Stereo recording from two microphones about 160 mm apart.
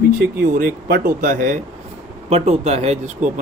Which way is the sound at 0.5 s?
65° right (ahead or behind).